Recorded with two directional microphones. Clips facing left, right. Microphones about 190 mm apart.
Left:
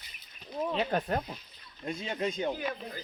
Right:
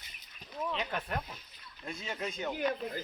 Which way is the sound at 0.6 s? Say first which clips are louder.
Left 6 dB; 35° left (ahead or behind).